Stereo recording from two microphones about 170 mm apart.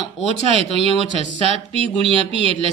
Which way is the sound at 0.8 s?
35° right (ahead or behind).